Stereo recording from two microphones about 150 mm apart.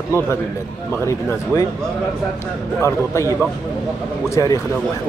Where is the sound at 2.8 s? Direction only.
20° left (ahead or behind).